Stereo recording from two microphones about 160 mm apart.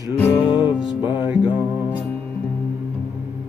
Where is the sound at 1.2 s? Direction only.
10° right (ahead or behind).